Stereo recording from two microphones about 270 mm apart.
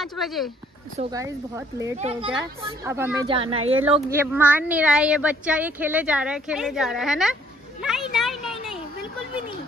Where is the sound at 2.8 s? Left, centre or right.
Centre.